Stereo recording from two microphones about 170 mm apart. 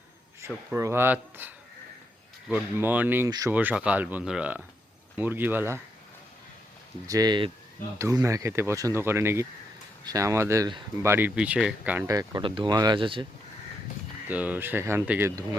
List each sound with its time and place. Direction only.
0.4 s speech: 15° right (ahead or behind)
3.2 s speech: 20° right (ahead or behind)
3.5 s speech: 10° right (ahead or behind)
7.1 s speech: 25° right (ahead or behind)
11.0 s speech: 15° right (ahead or behind)
12.0 s speech: 25° right (ahead or behind)
14.3 s speech: 10° right (ahead or behind)